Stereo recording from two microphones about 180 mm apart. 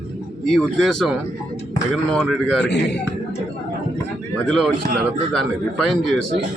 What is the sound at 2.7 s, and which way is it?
Speech, 70° left (ahead or behind).